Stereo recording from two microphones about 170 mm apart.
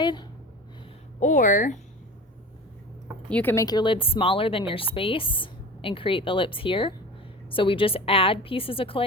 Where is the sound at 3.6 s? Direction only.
25° left (ahead or behind).